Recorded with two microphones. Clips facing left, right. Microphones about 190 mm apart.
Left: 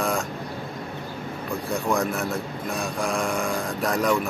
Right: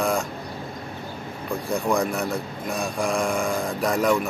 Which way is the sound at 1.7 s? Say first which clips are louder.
Right 2 dB; centre (ahead or behind).